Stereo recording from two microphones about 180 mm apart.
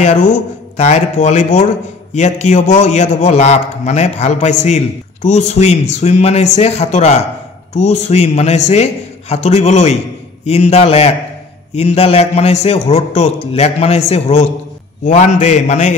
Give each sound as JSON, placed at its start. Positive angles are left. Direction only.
{"t": 0.0, "sound": "a man's voice", "side_deg": 40}